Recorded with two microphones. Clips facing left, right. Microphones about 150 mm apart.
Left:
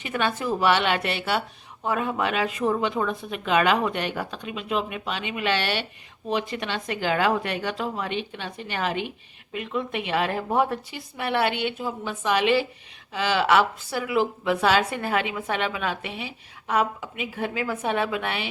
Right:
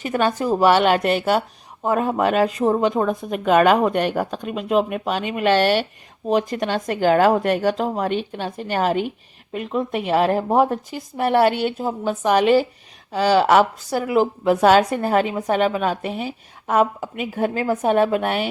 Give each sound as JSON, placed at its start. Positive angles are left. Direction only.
{"t": 0.0, "sound": "a woman's voice", "side_deg": -40}